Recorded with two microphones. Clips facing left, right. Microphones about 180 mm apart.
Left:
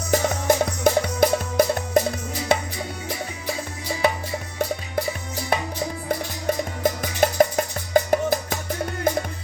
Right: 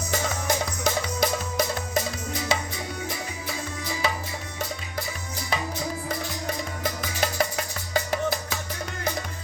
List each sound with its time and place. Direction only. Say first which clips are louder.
0.1 s music: left 7 dB; 50° left (ahead or behind)
4.0 s music: left 7 dB; 55° left (ahead or behind)
5.5 s music: left 5 dB; 55° left (ahead or behind)
6.8 s music: left 8 dB; 45° left (ahead or behind)